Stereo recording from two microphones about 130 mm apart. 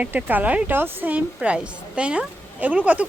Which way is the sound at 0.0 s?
10° right (ahead or behind).